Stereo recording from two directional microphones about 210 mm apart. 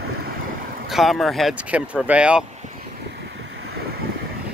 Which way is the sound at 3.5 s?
55° right (ahead or behind).